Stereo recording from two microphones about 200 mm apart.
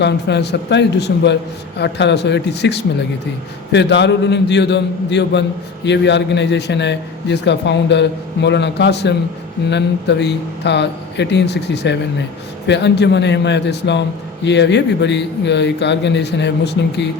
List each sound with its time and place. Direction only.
0.0 s a man's voice: 60° left (ahead or behind)